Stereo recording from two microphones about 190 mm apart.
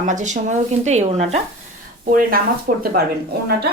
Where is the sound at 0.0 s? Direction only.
40° right (ahead or behind).